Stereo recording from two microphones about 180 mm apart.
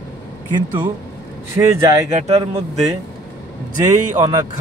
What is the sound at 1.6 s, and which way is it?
Speech, 15° right (ahead or behind).